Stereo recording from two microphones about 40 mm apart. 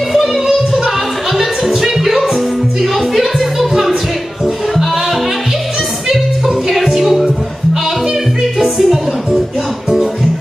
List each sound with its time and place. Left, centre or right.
0.1 s music: centre
6.0 s music: centre
8.4 s music: centre